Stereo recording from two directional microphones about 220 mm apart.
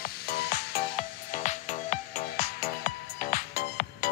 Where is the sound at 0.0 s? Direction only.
45° left (ahead or behind).